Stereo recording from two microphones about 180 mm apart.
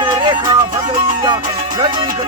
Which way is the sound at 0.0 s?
25° right (ahead or behind).